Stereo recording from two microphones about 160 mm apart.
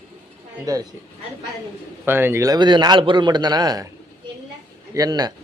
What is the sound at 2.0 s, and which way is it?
A man's voice, 15° right (ahead or behind).